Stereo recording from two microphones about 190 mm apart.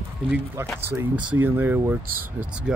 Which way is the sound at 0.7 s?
10° right (ahead or behind).